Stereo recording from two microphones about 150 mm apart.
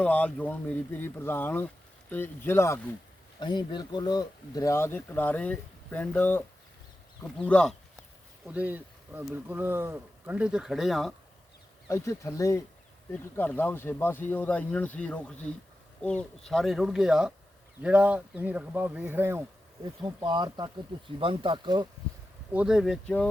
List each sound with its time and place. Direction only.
0.0 s speech: 10° left (ahead or behind)
3.4 s speech: 30° left (ahead or behind); by 7.8 s 5° left (ahead or behind)
8.4 s speech: 10° right (ahead or behind)
11.9 s speech: 20° left (ahead or behind); by 19.9 s 20° right (ahead or behind)
20.0 s speech: 30° right (ahead or behind)
22.5 s speech: 5° right (ahead or behind)